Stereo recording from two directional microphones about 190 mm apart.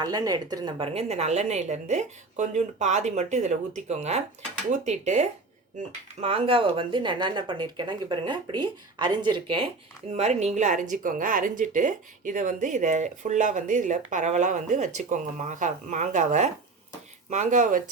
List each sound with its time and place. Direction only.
0.0 s speech: 20° right (ahead or behind)
10.1 s speech: 35° right (ahead or behind)